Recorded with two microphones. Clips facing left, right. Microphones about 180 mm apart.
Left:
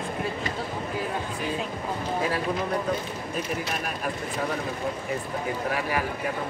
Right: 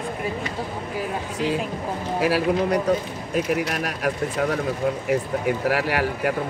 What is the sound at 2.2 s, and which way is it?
A man's voice, 85° right.